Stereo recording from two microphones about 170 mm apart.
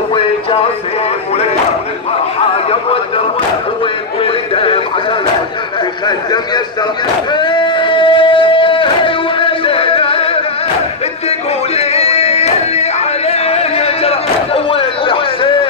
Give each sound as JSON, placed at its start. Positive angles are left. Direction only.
{"t": 0.1, "sound": "music", "side_deg": 30}
{"t": 4.2, "sound": "music", "side_deg": 35}
{"t": 6.0, "sound": "a man's voice", "side_deg": 25}
{"t": 7.3, "sound": "a sound", "side_deg": 25}